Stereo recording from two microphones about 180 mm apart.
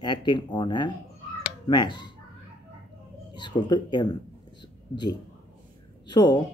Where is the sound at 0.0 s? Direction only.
25° left (ahead or behind).